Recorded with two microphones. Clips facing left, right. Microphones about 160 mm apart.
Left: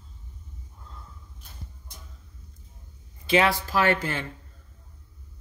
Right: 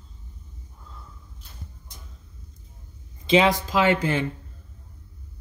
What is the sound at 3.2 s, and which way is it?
Speech, 20° right (ahead or behind).